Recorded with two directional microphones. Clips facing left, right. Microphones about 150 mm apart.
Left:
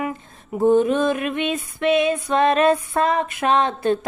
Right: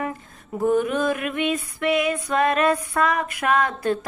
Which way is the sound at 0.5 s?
25° left (ahead or behind).